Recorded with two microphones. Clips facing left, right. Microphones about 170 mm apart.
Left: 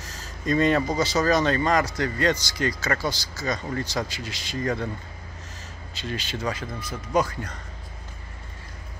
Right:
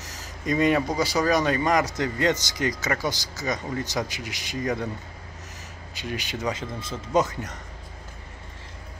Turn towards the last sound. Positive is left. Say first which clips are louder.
# right 1 dB
turn(degrees=-20)  # may be behind; listen again after turning